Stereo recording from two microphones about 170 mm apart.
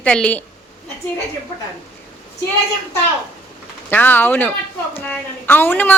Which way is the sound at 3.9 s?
10° left (ahead or behind).